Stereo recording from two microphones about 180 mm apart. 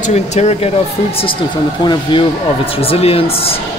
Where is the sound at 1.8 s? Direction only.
25° left (ahead or behind).